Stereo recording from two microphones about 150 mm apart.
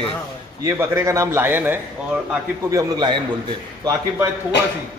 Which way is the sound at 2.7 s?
25° right (ahead or behind).